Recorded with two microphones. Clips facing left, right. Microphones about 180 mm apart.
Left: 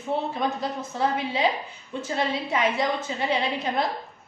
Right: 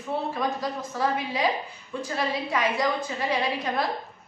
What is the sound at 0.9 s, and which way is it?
A woman's voice, 25° left (ahead or behind).